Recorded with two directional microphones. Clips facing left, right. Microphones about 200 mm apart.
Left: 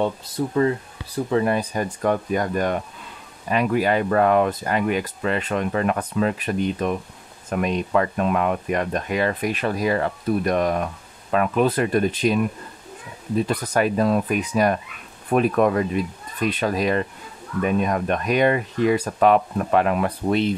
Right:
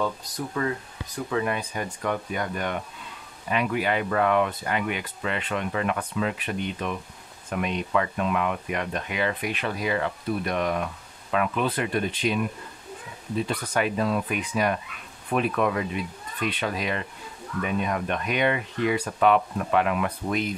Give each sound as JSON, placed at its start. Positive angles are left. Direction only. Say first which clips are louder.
{"t": 0.6, "sound": "speech", "louder": "left 8 dB", "side_deg": 30}
{"t": 13.5, "sound": "speech", "louder": "left 4 dB", "side_deg": 40}